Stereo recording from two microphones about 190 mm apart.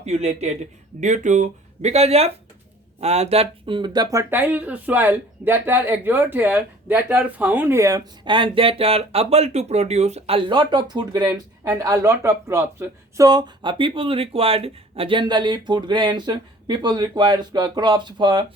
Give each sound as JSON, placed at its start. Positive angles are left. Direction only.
{"t": 0.0, "sound": "speech", "side_deg": -35}